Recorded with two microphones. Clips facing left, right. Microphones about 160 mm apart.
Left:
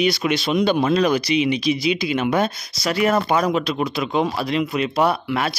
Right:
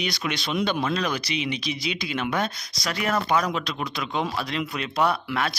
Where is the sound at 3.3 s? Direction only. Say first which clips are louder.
Left 5 dB; 25° left (ahead or behind).